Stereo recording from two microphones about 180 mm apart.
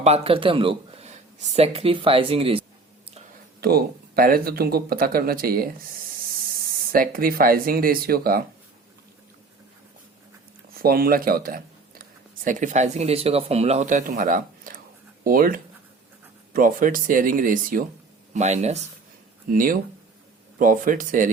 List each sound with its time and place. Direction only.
0.0 s speech: 35° right (ahead or behind)
3.6 s speech: 60° right (ahead or behind)
6.9 s speech: 50° right (ahead or behind)
10.8 s speech: 55° right (ahead or behind)
18.3 s speech: 40° right (ahead or behind)
19.5 s speech: 50° right (ahead or behind)